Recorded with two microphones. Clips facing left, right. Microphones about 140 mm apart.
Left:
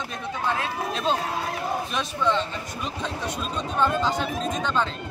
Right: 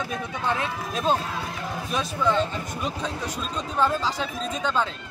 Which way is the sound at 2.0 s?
5° right (ahead or behind).